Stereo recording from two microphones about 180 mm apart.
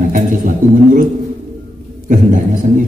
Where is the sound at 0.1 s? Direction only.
45° right (ahead or behind).